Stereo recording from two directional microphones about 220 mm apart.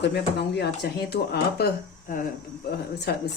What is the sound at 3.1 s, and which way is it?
Speech, 45° left (ahead or behind).